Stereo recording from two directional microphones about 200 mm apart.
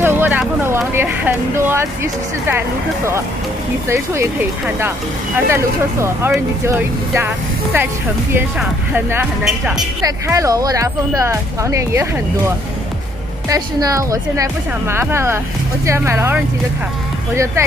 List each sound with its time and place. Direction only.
0.0 s vehicle: 10° right (ahead or behind)
3.9 s speech: 15° right (ahead or behind)
17.6 s speech: 15° right (ahead or behind)